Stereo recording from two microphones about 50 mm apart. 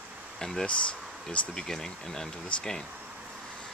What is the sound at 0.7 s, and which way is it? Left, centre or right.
Speech, left.